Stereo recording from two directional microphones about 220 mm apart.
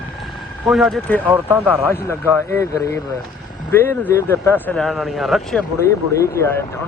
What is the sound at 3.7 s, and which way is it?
Speech, 10° left (ahead or behind).